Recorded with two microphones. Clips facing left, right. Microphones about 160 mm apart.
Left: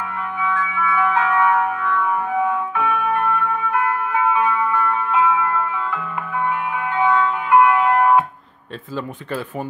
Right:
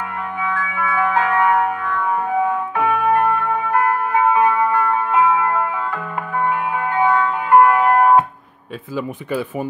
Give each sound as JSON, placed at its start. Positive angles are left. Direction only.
{"t": 0.4, "sound": "music", "side_deg": -35}
{"t": 8.9, "sound": "speech", "side_deg": -10}